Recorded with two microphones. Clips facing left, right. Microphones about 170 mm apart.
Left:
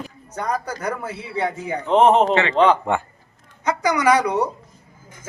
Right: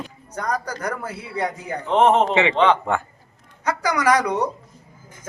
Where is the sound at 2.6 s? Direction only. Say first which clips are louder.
Left 2 dB; centre (ahead or behind).